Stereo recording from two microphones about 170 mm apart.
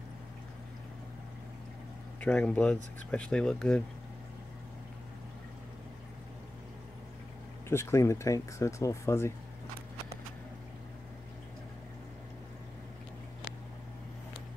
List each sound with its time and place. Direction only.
2.1 s speech: 5° left (ahead or behind)
7.7 s speech: 15° left (ahead or behind)